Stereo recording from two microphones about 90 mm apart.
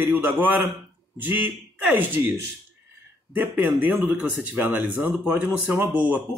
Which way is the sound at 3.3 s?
20° right (ahead or behind).